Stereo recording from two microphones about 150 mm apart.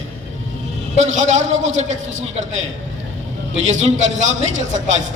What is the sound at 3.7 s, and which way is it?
Speech, 50° right (ahead or behind).